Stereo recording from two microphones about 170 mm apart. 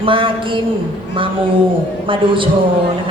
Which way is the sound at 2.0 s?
30° right (ahead or behind).